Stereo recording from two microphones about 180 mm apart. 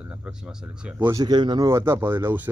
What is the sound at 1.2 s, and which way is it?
Speech, 25° right (ahead or behind).